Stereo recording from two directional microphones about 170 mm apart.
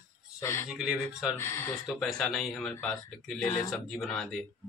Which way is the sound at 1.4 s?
15° left (ahead or behind).